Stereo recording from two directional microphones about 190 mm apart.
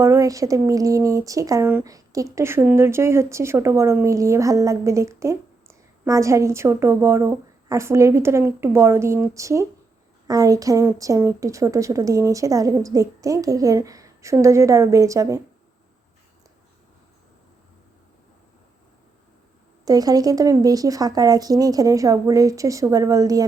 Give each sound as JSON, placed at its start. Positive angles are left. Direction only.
{"t": 0.0, "sound": "speech", "side_deg": -15}
{"t": 19.8, "sound": "speech", "side_deg": -20}